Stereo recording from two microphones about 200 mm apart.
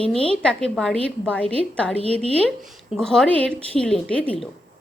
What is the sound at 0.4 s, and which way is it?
A woman's voice, 5° left (ahead or behind).